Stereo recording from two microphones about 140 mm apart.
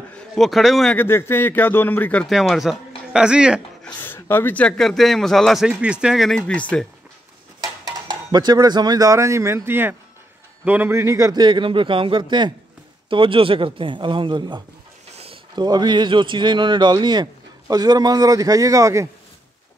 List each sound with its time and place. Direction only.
0.1 s a man's voice: centre (ahead or behind)
0.9 s speech: 15° left (ahead or behind)
2.2 s a man's voice: centre (ahead or behind)
3.8 s a man's voice: 15° left (ahead or behind)
7.8 s a man's voice: 30° right (ahead or behind)